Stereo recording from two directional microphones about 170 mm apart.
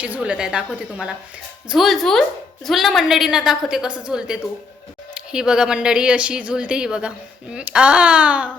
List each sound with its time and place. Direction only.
0.0 s a woman's voice: 5° right (ahead or behind)